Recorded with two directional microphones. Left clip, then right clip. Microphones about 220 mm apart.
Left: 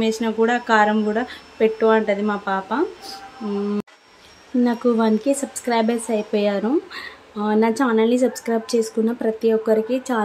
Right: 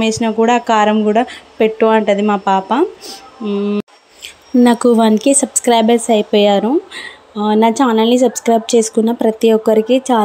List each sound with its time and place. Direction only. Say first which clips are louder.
0.0 s speech: right 6 dB; 25° right (ahead or behind)
3.4 s speech: right 7 dB; 15° right (ahead or behind)
4.6 s speech: right 8 dB; 30° right (ahead or behind)